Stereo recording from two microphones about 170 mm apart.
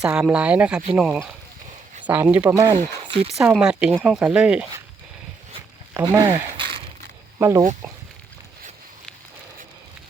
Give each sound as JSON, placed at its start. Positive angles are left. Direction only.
{"t": 0.0, "sound": "speech", "side_deg": -5}
{"t": 3.1, "sound": "speech", "side_deg": -35}
{"t": 3.4, "sound": "speech", "side_deg": -5}
{"t": 5.9, "sound": "speech", "side_deg": -15}
{"t": 7.3, "sound": "speech", "side_deg": -15}